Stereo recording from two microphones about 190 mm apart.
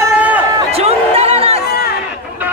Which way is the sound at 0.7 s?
30° right (ahead or behind).